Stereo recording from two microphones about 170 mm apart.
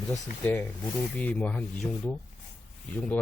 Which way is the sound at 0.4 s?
10° left (ahead or behind).